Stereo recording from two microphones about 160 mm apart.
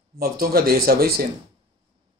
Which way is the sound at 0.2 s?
70° right (ahead or behind).